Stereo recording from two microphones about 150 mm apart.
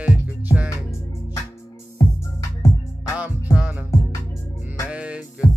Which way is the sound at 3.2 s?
10° right (ahead or behind).